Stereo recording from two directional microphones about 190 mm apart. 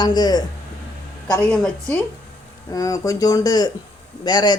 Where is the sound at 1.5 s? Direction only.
5° left (ahead or behind).